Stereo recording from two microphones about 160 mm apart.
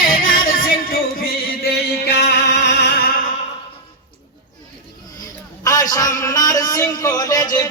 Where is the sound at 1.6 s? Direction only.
90° left.